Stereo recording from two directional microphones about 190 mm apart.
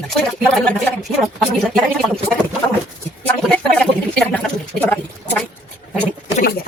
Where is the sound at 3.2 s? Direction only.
5° left (ahead or behind).